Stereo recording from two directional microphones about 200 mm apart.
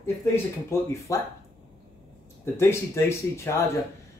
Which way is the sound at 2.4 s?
10° left (ahead or behind).